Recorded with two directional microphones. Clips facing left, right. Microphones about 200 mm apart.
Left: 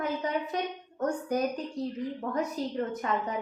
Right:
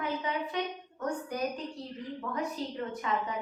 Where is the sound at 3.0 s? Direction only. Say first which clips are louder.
Even; 45° left (ahead or behind).